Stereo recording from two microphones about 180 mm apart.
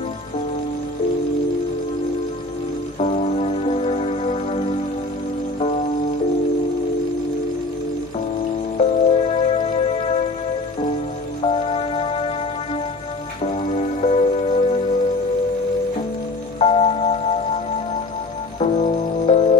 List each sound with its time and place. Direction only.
3.0 s music: 40° left (ahead or behind)
8.7 s music: 35° left (ahead or behind)
11.4 s music: 35° left (ahead or behind)
13.4 s music: 35° left (ahead or behind)
16.5 s music: 30° left (ahead or behind)
18.6 s music: 40° left (ahead or behind)